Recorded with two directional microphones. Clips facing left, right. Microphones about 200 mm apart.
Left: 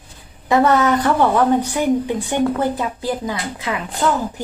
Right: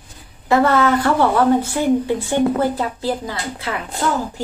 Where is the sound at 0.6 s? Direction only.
20° left (ahead or behind).